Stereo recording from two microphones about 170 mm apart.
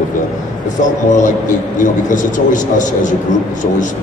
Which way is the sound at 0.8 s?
50° left (ahead or behind).